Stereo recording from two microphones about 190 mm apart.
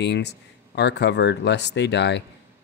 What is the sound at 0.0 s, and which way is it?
Speech, 65° left (ahead or behind).